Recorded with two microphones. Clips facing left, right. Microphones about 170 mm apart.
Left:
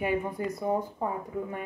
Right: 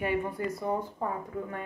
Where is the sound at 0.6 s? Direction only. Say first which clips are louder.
Left 5 dB; 15° left (ahead or behind).